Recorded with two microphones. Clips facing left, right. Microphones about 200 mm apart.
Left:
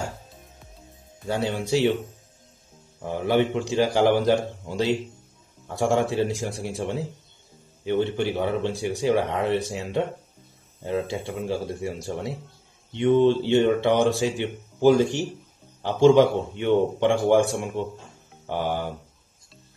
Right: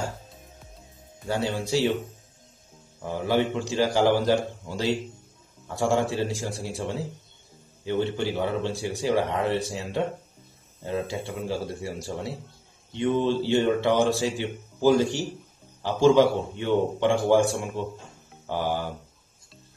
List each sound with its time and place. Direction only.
1.2 s speech: 15° left (ahead or behind)
3.0 s speech: 20° left (ahead or behind)